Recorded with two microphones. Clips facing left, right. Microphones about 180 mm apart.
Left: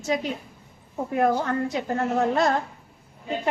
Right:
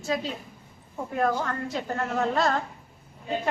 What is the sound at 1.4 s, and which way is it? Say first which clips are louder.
A woman's voice: left 5 dB; 20° left (ahead or behind).